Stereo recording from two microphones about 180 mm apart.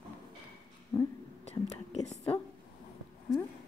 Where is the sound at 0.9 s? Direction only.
20° left (ahead or behind).